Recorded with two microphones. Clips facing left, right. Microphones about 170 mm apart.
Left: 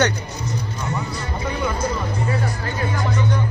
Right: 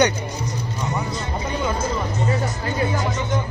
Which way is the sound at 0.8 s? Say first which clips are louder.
Right 3 dB; 20° right (ahead or behind).